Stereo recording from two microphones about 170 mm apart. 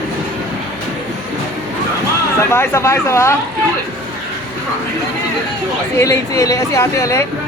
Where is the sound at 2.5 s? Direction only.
15° left (ahead or behind).